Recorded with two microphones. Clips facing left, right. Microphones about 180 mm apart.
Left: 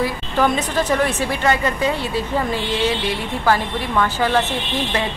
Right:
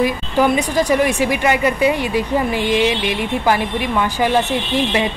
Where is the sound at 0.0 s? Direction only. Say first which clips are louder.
Right 3 dB; 10° right (ahead or behind).